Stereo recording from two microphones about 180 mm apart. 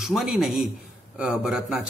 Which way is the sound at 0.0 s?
5° right (ahead or behind).